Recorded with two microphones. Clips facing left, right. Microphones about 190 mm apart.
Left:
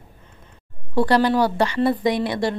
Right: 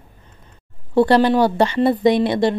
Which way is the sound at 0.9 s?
25° right (ahead or behind).